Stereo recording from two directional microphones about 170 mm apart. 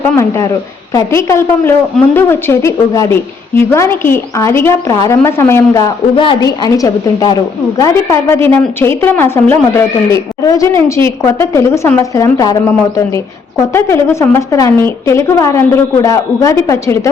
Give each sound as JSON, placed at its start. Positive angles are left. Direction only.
{"t": 0.0, "sound": "a woman's voice", "side_deg": 15}
{"t": 6.1, "sound": "a woman's voice", "side_deg": 25}